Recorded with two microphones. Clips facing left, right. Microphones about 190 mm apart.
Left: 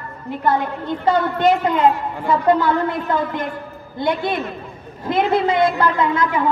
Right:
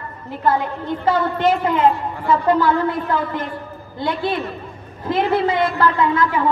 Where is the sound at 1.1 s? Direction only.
15° left (ahead or behind).